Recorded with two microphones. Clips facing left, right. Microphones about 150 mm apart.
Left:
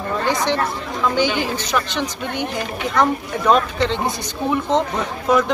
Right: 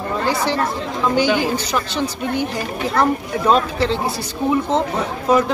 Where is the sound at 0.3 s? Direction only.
10° right (ahead or behind).